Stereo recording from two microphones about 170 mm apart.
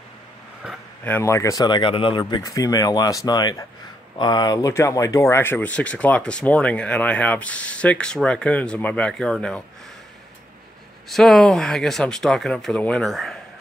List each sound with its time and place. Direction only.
0.6 s speech: centre (ahead or behind)
1.0 s speech: 15° left (ahead or behind)
11.1 s speech: centre (ahead or behind)